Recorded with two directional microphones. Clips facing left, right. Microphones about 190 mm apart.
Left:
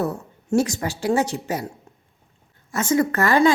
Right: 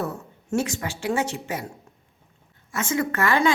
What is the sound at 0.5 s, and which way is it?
Speech, 40° left (ahead or behind).